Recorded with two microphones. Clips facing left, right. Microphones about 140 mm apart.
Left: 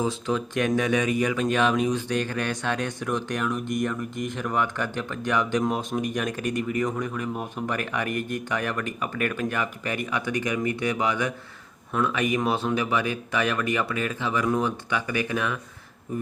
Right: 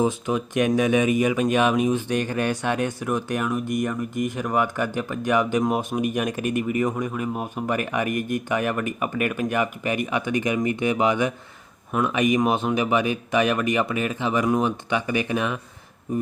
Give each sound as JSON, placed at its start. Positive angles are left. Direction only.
{"t": 0.0, "sound": "speech", "side_deg": -15}
{"t": 6.9, "sound": "speech", "side_deg": -20}
{"t": 7.2, "sound": "speech", "side_deg": -10}